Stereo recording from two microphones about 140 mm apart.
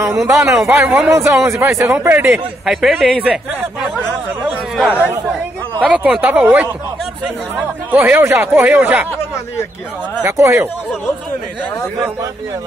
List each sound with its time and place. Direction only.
0.1 s a man's voice: centre (ahead or behind)
1.1 s speech: 20° right (ahead or behind)
2.6 s a man's voice: centre (ahead or behind)
4.5 s chatter: 10° right (ahead or behind)
5.9 s speech: 10° right (ahead or behind)
7.9 s speech: 15° right (ahead or behind)
10.2 s speech: 20° right (ahead or behind)